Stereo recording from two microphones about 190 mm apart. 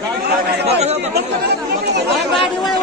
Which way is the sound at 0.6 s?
35° right (ahead or behind).